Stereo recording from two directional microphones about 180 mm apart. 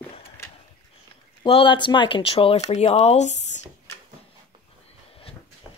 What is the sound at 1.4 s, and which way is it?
Speech, 30° left (ahead or behind).